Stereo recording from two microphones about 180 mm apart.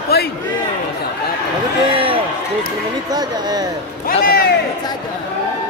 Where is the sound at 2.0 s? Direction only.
30° right (ahead or behind).